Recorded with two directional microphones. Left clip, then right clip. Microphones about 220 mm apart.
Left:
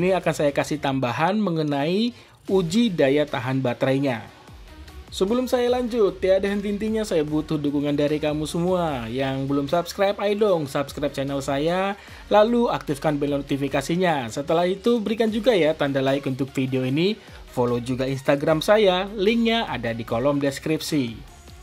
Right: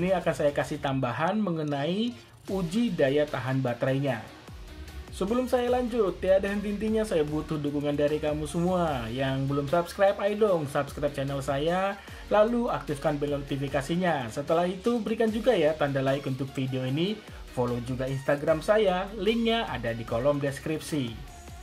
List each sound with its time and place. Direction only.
0.0 s speech: 45° left (ahead or behind)
5.2 s speech: 40° left (ahead or behind)